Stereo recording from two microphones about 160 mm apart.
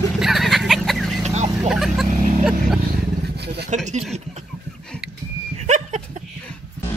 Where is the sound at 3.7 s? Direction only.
45° right (ahead or behind).